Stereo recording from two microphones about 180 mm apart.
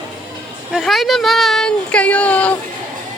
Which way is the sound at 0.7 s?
Centre (ahead or behind).